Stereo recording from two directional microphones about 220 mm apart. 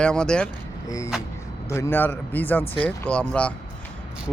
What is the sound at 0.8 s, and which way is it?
A man's voice, 15° left (ahead or behind).